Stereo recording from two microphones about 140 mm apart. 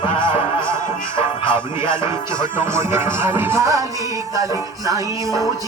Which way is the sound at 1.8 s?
20° right (ahead or behind).